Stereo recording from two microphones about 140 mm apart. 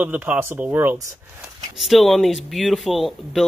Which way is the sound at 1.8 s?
Centre (ahead or behind).